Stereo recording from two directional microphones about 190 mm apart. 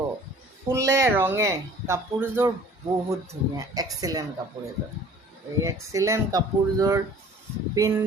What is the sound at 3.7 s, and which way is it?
Speech, 20° right (ahead or behind).